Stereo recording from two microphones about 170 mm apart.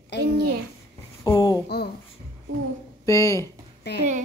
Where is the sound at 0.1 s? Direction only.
85° left.